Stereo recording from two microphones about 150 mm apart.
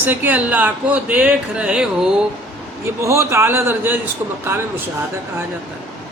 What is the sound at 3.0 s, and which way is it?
Speech, 20° right (ahead or behind).